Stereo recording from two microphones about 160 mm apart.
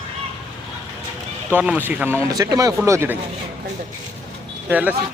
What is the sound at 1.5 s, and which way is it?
Speech, 10° right (ahead or behind).